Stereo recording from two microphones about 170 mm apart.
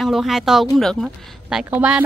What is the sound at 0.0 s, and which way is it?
Speech, centre (ahead or behind).